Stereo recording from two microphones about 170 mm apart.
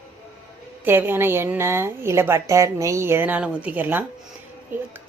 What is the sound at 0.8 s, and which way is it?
A woman's voice, 10° right (ahead or behind).